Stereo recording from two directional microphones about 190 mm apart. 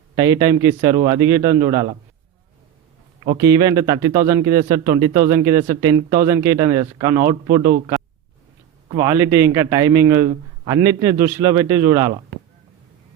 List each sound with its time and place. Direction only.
0.2 s speech: 20° right (ahead or behind)
3.3 s speech: 15° right (ahead or behind)
9.0 s speech: 15° right (ahead or behind)